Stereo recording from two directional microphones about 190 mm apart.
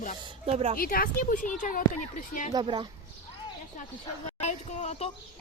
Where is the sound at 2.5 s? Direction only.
25° right (ahead or behind).